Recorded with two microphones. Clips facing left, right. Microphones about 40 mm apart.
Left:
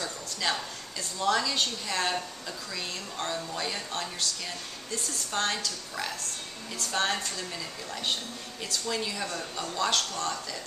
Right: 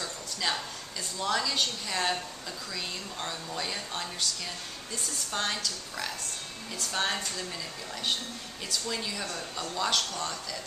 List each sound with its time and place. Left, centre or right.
0.0 s a sound: centre
1.2 s speech: centre
8.6 s speech: centre
9.8 s speech: centre